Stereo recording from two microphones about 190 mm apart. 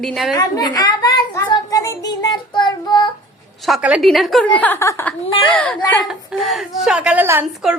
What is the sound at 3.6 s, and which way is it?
A woman's voice, centre (ahead or behind).